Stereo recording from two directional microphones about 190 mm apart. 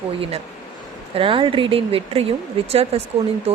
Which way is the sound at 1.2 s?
30° right (ahead or behind).